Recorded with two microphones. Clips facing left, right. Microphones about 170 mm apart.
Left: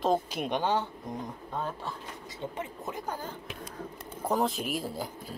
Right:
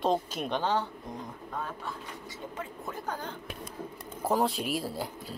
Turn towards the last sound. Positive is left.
turn(degrees=0)  # may be behind; listen again after turning